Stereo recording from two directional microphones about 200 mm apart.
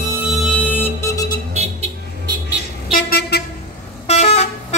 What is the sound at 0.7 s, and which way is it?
Music, 15° left (ahead or behind).